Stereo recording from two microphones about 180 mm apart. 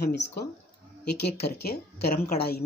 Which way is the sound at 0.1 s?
65° left (ahead or behind).